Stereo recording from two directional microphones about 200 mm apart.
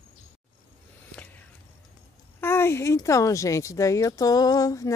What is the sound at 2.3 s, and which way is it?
Speech, 10° left (ahead or behind).